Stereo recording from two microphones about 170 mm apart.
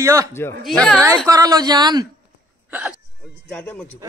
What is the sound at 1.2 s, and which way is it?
Speech, 20° right (ahead or behind).